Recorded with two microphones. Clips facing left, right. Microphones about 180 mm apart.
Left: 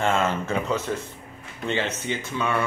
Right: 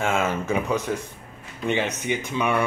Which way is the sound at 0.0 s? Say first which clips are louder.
Left 1 dB; 10° right (ahead or behind).